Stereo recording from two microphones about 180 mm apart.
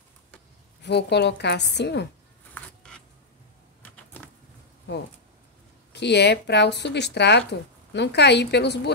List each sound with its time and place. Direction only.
0.8 s speech: 70° left (ahead or behind)
2.5 s a sound: 5° left (ahead or behind)
5.9 s speech: 70° left (ahead or behind)